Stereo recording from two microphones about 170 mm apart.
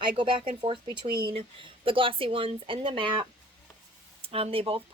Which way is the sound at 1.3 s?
35° right (ahead or behind).